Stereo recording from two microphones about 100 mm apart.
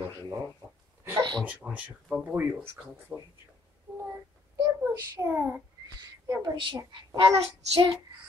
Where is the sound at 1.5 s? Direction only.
15° right (ahead or behind).